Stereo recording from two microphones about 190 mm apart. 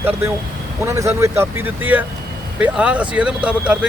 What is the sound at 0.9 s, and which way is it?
Speech, 15° right (ahead or behind).